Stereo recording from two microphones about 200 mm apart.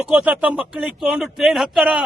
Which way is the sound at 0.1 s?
5° right (ahead or behind).